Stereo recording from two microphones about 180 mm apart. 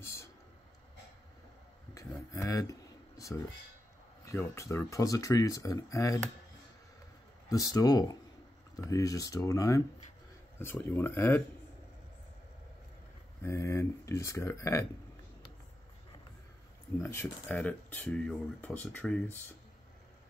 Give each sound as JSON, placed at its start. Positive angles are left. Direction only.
{"t": 0.0, "sound": "a sound", "side_deg": 15}
{"t": 2.0, "sound": "a sound", "side_deg": 15}
{"t": 4.2, "sound": "speech", "side_deg": 15}
{"t": 7.4, "sound": "speech", "side_deg": 20}
{"t": 13.4, "sound": "speech", "side_deg": 15}
{"t": 17.0, "sound": "speech", "side_deg": 10}